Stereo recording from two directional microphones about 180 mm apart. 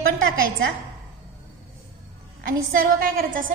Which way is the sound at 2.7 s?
55° right (ahead or behind).